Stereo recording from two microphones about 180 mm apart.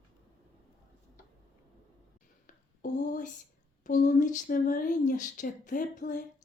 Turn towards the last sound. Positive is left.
turn(degrees=45)  # may be behind; listen again after turning